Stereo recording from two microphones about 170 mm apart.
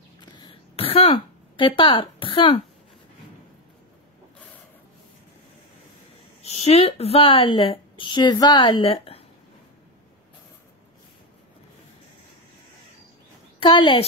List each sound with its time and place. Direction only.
0.2 s a sound: 25° left (ahead or behind)
6.4 s a woman's voice: 40° left (ahead or behind)
13.6 s a woman's voice: 30° left (ahead or behind)